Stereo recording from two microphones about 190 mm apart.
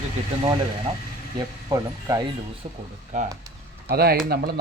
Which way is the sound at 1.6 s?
20° right (ahead or behind).